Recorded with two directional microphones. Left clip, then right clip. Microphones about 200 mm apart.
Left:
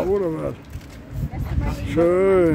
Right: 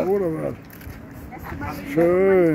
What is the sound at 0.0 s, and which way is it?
Speech, 5° left (ahead or behind).